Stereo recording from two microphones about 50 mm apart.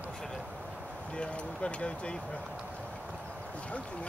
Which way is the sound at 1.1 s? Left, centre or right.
Left.